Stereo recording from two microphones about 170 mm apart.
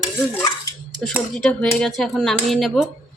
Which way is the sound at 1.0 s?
5° left (ahead or behind).